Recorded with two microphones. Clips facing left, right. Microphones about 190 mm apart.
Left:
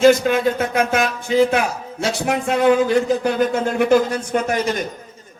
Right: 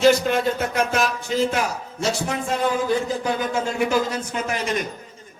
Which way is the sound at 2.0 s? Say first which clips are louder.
Left 4 dB; 70° left (ahead or behind).